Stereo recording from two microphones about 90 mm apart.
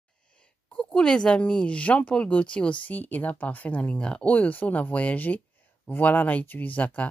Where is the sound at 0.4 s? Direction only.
10° left (ahead or behind).